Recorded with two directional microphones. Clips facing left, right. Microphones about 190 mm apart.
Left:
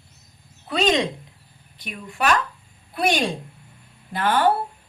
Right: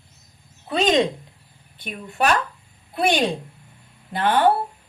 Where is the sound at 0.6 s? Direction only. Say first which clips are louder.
Right 2 dB; 20° right (ahead or behind).